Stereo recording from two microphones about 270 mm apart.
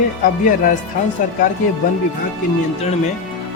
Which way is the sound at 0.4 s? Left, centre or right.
Left.